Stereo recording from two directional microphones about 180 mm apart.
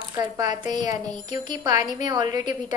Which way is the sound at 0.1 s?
20° right (ahead or behind).